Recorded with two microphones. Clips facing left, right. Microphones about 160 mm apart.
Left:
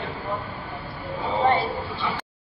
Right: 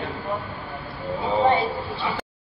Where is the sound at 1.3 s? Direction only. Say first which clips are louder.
Right 1 dB; 15° right (ahead or behind).